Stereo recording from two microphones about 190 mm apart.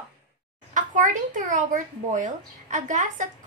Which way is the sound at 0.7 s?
40° right (ahead or behind).